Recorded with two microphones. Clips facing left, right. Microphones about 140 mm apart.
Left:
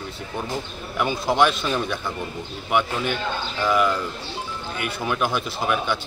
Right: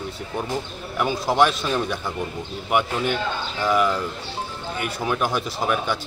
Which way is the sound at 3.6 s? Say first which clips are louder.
Even; 5° right (ahead or behind).